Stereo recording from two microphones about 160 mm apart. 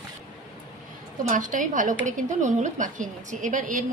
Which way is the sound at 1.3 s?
55° right (ahead or behind).